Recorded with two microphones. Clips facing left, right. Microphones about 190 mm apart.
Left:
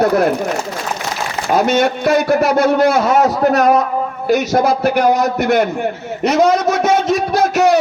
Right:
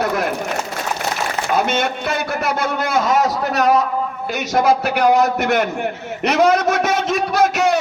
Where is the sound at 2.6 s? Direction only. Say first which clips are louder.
Left 7 dB; 60° left (ahead or behind).